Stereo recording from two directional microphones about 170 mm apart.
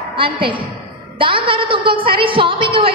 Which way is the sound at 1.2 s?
30° right (ahead or behind).